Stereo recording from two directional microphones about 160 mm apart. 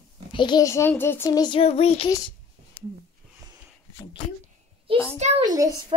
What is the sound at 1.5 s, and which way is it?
Child singing, 40° left (ahead or behind).